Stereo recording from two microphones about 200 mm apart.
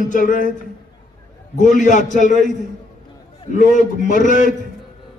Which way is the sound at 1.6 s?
40° left (ahead or behind).